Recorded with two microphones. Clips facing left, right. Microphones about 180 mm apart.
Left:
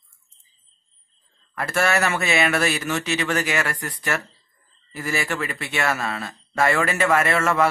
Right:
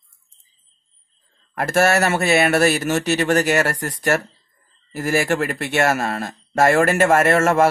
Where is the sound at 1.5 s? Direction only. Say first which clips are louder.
Right 5 dB; 50° right (ahead or behind).